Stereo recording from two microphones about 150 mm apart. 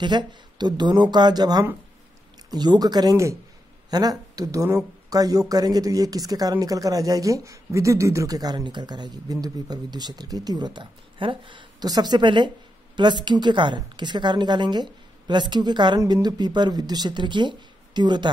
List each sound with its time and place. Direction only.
0.0 s speech: 30° right (ahead or behind)